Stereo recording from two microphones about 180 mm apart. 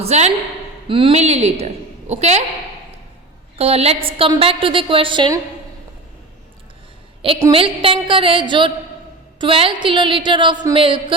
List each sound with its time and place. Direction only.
0.0 s a woman's voice: 35° right (ahead or behind)
3.6 s a woman's voice: 35° right (ahead or behind)
7.2 s a woman's voice: 30° right (ahead or behind)